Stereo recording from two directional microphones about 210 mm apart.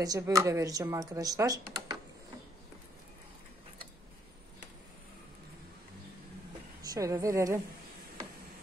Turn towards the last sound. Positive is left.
turn(degrees=-15)  # may be behind; listen again after turning